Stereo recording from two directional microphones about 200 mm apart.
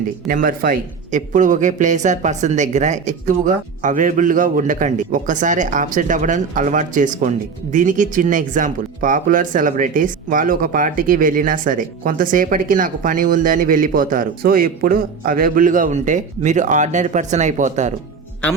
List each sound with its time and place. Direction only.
0.3 s speech: 45° right (ahead or behind)